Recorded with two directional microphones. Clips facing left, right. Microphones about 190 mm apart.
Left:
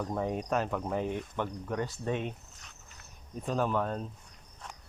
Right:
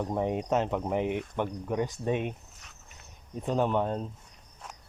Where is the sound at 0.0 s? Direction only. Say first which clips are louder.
Right 3 dB; 25° right (ahead or behind).